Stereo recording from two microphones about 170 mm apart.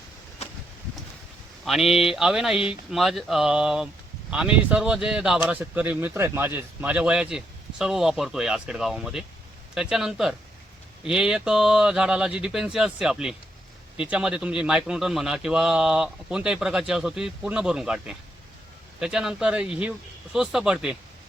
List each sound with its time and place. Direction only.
1.6 s speech: centre (ahead or behind)